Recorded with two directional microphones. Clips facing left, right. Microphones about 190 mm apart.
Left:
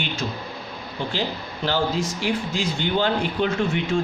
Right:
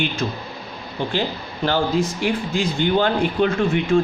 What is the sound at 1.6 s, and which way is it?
Speech, 55° right (ahead or behind).